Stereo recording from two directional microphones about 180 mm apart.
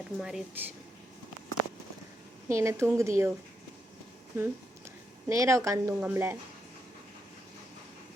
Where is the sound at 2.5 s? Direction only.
15° right (ahead or behind).